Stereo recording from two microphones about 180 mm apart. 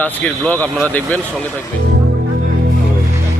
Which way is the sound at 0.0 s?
10° left (ahead or behind).